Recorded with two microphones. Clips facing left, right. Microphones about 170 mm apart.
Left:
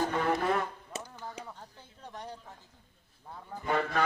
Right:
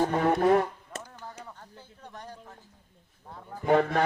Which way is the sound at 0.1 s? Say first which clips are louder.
Right 6 dB; 45° right (ahead or behind).